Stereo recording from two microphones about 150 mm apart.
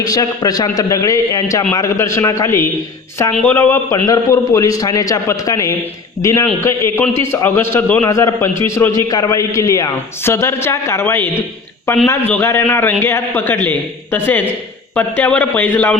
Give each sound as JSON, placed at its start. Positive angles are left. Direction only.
{"t": 0.0, "sound": "a man's voice", "side_deg": 25}